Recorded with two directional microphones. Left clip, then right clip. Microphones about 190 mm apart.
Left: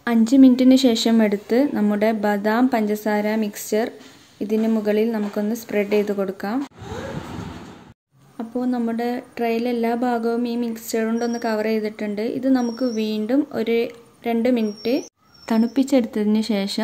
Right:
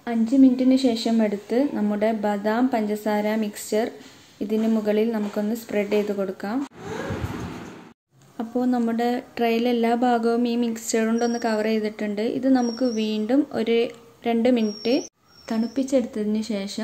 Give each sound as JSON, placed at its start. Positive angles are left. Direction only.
{"t": 0.0, "sound": "a woman's voice", "side_deg": 25}
{"t": 8.4, "sound": "speech", "side_deg": 0}
{"t": 15.4, "sound": "speech", "side_deg": 20}